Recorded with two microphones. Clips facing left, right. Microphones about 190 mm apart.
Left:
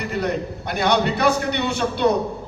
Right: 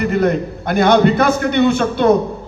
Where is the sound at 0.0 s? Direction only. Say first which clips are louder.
Right 8 dB; 50° right (ahead or behind).